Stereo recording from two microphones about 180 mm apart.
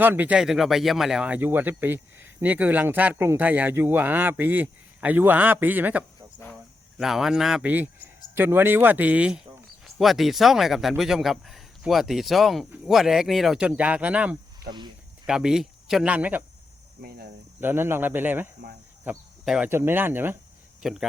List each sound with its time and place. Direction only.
0.0 s speech: 10° right (ahead or behind)
14.6 s speech: 60° right (ahead or behind)
15.3 s speech: 5° right (ahead or behind)
17.0 s cricket: 60° right (ahead or behind)
17.6 s speech: 10° right (ahead or behind)